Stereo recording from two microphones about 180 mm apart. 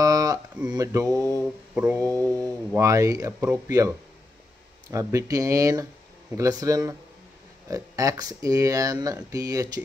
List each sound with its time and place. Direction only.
0.0 s a sound: 20° right (ahead or behind)
0.7 s speech: 20° right (ahead or behind)
1.2 s mantra: 15° left (ahead or behind)
1.8 s speech: 15° right (ahead or behind)
4.9 s speech: 20° right (ahead or behind)